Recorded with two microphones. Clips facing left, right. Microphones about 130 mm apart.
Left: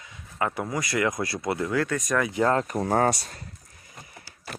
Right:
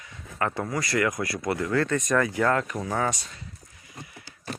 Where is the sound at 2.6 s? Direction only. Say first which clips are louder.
Left 5 dB; 45° left (ahead or behind).